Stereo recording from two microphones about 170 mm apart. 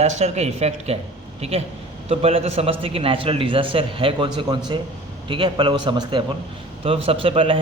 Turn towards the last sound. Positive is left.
turn(degrees=-30)  # may be behind; listen again after turning